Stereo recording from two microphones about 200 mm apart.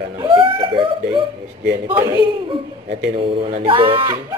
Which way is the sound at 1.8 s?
10° right (ahead or behind).